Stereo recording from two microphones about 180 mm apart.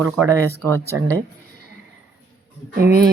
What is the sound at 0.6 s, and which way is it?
Speech, 10° left (ahead or behind).